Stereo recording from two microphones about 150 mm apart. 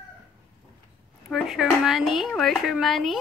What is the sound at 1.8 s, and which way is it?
A woman's voice, centre (ahead or behind).